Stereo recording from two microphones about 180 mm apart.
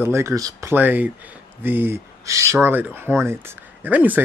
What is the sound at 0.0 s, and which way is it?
Speech, 15° right (ahead or behind).